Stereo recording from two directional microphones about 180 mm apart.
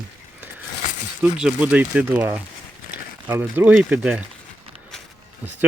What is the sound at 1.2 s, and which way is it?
Speech, 5° right (ahead or behind).